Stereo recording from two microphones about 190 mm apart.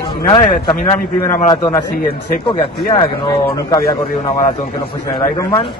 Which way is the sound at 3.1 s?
20° left (ahead or behind).